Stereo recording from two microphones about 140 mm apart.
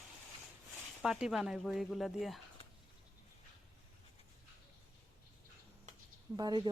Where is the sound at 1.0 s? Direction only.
5° right (ahead or behind).